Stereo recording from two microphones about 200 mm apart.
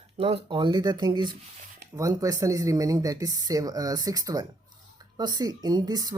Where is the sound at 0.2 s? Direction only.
30° right (ahead or behind).